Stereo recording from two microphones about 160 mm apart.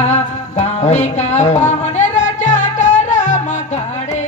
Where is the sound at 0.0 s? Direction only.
45° left (ahead or behind).